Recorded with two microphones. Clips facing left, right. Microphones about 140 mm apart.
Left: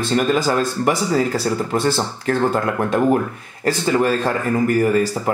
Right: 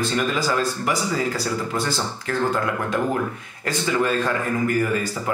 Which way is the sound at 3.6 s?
35° left (ahead or behind).